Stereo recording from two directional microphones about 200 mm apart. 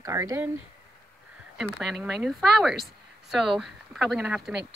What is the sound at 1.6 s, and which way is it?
Speech, centre (ahead or behind).